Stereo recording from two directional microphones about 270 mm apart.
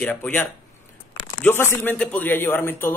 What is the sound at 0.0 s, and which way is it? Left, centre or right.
A man's voice, centre.